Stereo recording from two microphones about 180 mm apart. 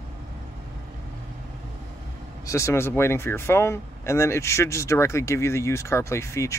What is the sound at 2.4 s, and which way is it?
Speech, 15° left (ahead or behind).